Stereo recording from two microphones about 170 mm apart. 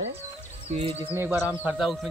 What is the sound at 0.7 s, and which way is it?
Speech, 35° right (ahead or behind).